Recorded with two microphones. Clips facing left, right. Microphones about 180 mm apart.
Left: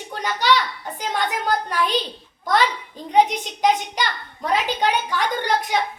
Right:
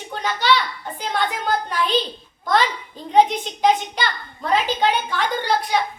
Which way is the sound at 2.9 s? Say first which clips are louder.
Right 2 dB; 15° left (ahead or behind).